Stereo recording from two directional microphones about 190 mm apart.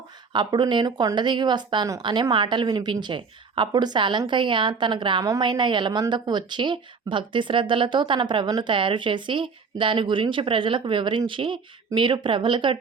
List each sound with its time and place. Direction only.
0.3 s speech: 25° right (ahead or behind)